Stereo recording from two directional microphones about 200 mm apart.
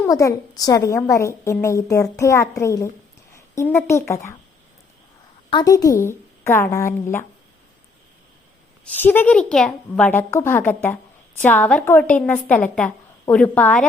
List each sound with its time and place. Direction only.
0.0 s a woman's voice: 15° left (ahead or behind)
3.3 s a sound: 15° left (ahead or behind)
4.1 s a woman's voice: 15° left (ahead or behind)
5.5 s a woman's voice: 20° left (ahead or behind)
8.8 s a woman's voice: 10° left (ahead or behind)